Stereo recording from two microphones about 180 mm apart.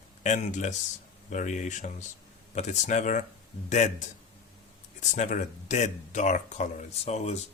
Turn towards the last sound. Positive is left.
turn(degrees=35)  # may be behind; listen again after turning